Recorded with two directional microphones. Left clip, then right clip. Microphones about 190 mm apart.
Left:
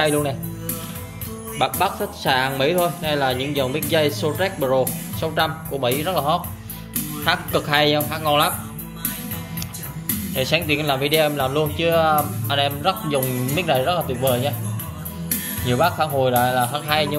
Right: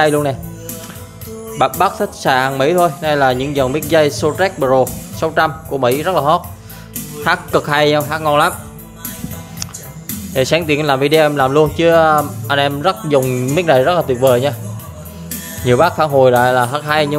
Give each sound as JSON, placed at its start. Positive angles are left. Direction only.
{"t": 0.0, "sound": "speech", "side_deg": -30}
{"t": 1.6, "sound": "speech", "side_deg": -35}
{"t": 10.3, "sound": "speech", "side_deg": -35}
{"t": 15.6, "sound": "speech", "side_deg": -40}